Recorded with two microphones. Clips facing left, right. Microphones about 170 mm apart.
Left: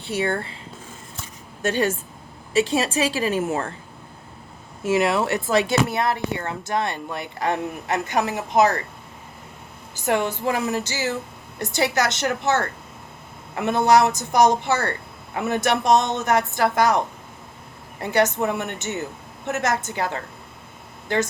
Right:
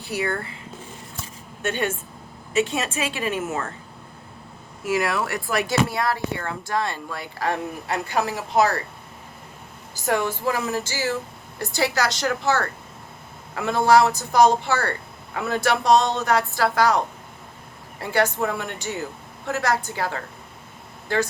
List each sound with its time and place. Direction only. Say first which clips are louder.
0.0 s speech: left 2 dB; 25° left (ahead or behind)
1.6 s a woman's voice: left 3 dB; 35° left (ahead or behind)
4.8 s speech: left 3 dB; 25° left (ahead or behind)
10.1 s a woman's voice: left 1 dB; 20° left (ahead or behind)
18.0 s speech: left 2 dB; 20° left (ahead or behind)